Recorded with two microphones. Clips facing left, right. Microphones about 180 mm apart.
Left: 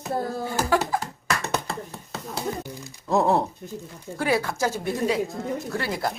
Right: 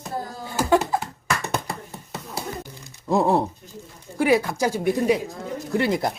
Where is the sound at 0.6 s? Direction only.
20° right (ahead or behind).